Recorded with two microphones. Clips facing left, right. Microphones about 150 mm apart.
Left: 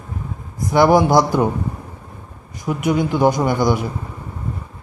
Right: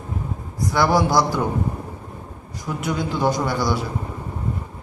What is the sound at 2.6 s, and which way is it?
A man's voice, 15° left (ahead or behind).